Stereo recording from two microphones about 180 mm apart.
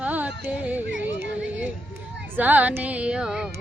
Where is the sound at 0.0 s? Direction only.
10° right (ahead or behind).